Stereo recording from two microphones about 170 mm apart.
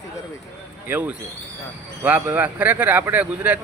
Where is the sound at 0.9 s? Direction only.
10° right (ahead or behind).